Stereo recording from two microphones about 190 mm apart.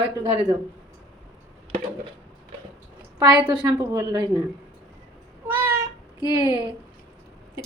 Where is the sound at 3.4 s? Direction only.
25° right (ahead or behind).